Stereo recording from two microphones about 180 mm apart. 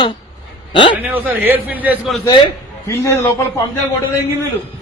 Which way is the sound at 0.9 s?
10° right (ahead or behind).